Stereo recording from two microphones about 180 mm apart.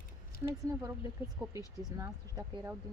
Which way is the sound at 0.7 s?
15° right (ahead or behind).